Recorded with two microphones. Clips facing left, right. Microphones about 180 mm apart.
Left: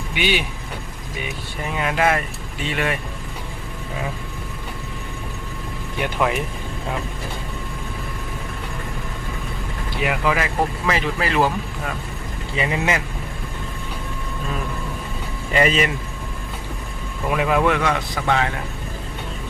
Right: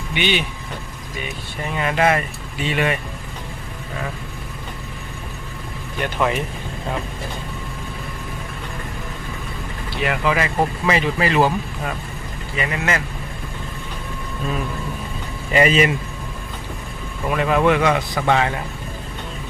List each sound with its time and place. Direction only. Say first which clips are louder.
0.1 s speech: right 1 dB; 5° left (ahead or behind)
1.6 s speech: right 1 dB; 5° left (ahead or behind)
6.0 s speech: right 1 dB; 5° left (ahead or behind)
10.0 s speech: right 1 dB; 5° left (ahead or behind)
12.5 s speech: left 1 dB; 20° left (ahead or behind)
15.5 s speech: right 3 dB; 5° right (ahead or behind)
17.2 s speech: right 2 dB; 5° left (ahead or behind)